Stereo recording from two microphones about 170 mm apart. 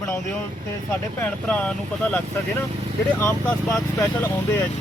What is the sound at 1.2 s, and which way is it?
Speech, 10° left (ahead or behind).